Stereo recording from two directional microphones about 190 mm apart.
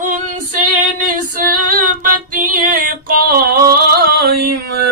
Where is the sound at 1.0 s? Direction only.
45° right (ahead or behind).